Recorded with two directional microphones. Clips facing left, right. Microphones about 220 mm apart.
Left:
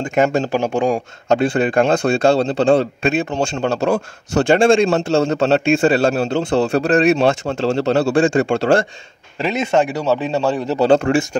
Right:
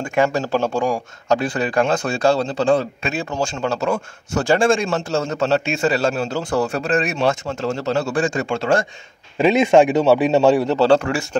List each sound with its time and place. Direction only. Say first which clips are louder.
0.2 s speech: left 2 dB; 20° left (ahead or behind)
9.7 s speech: right 2 dB; 15° right (ahead or behind)
10.8 s speech: left 2 dB; 25° left (ahead or behind)